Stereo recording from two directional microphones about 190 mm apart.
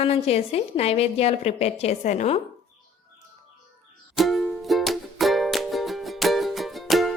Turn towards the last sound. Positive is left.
turn(degrees=0)  # may be behind; listen again after turning